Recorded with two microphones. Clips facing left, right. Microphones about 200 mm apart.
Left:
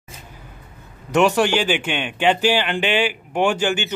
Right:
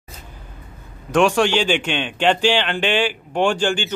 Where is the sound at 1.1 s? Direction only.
10° left (ahead or behind).